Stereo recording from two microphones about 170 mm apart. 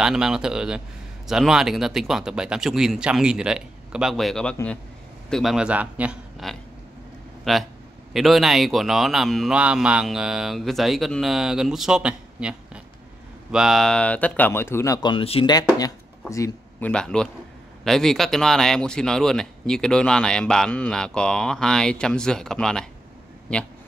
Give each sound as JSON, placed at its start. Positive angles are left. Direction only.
{"t": 0.0, "sound": "speech", "side_deg": -5}
{"t": 15.5, "sound": "speech", "side_deg": 20}
{"t": 16.9, "sound": "speech", "side_deg": 5}